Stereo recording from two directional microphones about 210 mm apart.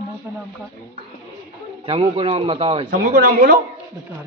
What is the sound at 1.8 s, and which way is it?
A man's voice, 30° right (ahead or behind).